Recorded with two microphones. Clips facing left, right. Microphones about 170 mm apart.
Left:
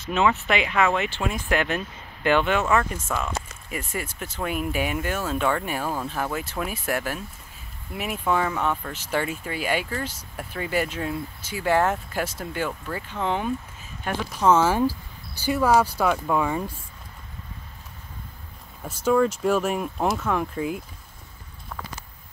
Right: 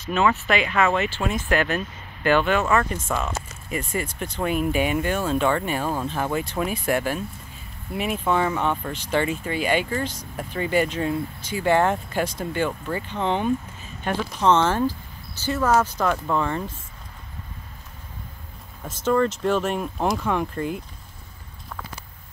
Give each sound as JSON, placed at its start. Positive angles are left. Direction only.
{"t": 0.0, "sound": "speech", "side_deg": 20}
{"t": 2.6, "sound": "speech", "side_deg": 5}
{"t": 18.9, "sound": "speech", "side_deg": 10}